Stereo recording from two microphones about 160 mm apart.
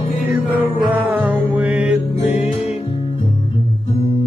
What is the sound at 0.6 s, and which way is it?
Music, 10° right (ahead or behind).